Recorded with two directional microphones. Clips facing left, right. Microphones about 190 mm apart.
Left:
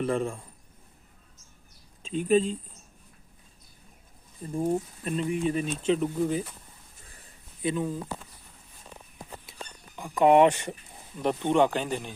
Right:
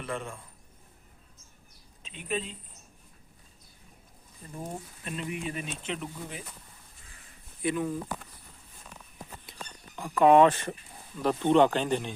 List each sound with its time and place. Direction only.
0.0 s speech: 35° left (ahead or behind)
2.0 s speech: 40° left (ahead or behind)
5.0 s speech: 40° left (ahead or behind)
7.6 s speech: 25° left (ahead or behind)
9.6 s speech: 15° left (ahead or behind)